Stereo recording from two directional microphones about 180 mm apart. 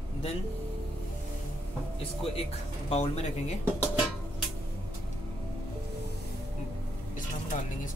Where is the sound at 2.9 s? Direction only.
35° left (ahead or behind).